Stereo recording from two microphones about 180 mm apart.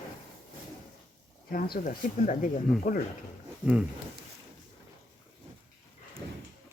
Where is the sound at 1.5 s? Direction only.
55° left (ahead or behind).